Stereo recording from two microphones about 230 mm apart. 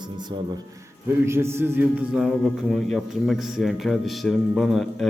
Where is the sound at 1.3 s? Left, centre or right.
Centre.